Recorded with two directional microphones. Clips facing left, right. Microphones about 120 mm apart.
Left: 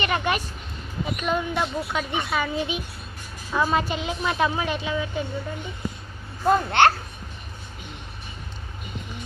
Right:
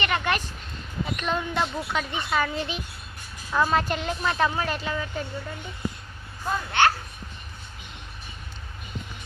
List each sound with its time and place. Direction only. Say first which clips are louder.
0.0 s a child's voice: left 1 dB; 15° left (ahead or behind)
6.5 s a child's voice: left 6 dB; 65° left (ahead or behind)